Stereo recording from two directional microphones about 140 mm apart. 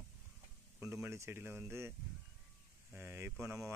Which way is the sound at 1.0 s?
20° right (ahead or behind).